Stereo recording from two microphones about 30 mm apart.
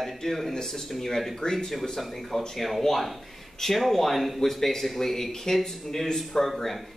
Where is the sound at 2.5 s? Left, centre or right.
Centre.